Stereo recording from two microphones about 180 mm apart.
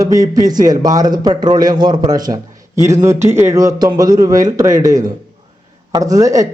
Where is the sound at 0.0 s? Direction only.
20° right (ahead or behind).